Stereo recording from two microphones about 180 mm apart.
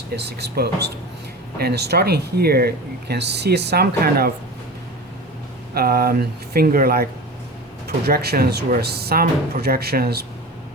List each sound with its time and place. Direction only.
0.2 s speech: 65° right (ahead or behind)
5.7 s speech: 55° right (ahead or behind)